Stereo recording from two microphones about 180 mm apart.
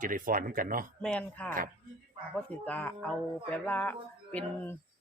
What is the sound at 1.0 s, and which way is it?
Speech, 5° left (ahead or behind).